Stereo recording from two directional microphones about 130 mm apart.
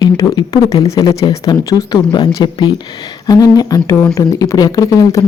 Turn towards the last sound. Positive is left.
turn(degrees=25)  # may be behind; listen again after turning